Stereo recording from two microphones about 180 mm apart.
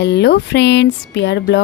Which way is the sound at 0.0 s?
70° left (ahead or behind).